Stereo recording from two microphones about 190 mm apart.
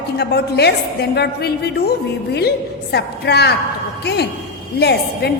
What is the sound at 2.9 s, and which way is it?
A woman's voice, 60° left (ahead or behind).